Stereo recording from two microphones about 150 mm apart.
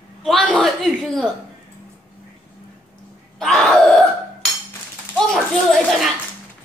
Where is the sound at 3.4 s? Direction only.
Centre (ahead or behind).